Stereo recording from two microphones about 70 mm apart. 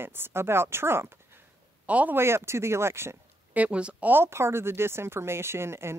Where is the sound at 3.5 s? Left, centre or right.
Centre.